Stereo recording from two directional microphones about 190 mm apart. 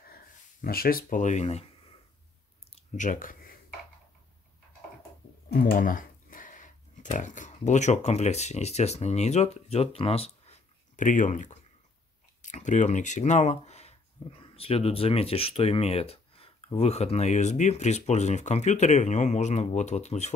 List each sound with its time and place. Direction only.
0.0 s speech: 50° left (ahead or behind); by 1.7 s 35° left (ahead or behind)
2.7 s a sound: 40° left (ahead or behind)
5.5 s speech: 50° left (ahead or behind)